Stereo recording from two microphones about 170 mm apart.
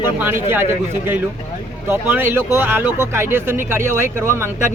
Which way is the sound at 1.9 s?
10° right (ahead or behind).